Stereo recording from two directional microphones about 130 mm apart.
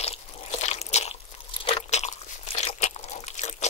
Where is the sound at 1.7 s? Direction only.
60° left (ahead or behind).